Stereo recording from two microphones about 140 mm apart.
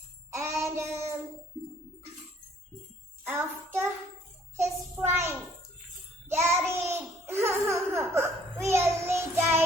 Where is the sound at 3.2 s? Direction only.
15° right (ahead or behind).